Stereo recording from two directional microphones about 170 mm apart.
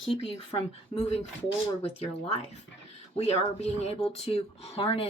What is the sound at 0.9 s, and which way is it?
Speech, 35° left (ahead or behind).